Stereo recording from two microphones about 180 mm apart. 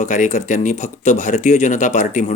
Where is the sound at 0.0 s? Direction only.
45° left (ahead or behind).